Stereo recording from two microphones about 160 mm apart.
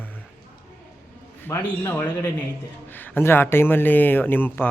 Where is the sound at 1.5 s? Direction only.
15° left (ahead or behind).